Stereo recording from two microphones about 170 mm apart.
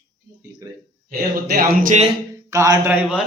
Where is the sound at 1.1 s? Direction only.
60° right (ahead or behind).